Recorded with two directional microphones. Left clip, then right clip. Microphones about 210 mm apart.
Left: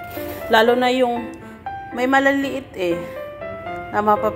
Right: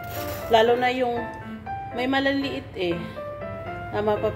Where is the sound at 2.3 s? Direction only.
45° left (ahead or behind).